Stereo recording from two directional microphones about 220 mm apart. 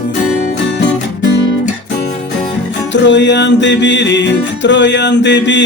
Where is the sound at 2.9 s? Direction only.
55° left (ahead or behind).